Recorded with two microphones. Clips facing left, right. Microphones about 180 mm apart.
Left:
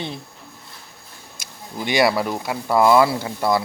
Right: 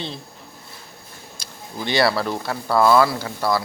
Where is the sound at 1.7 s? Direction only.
15° left (ahead or behind).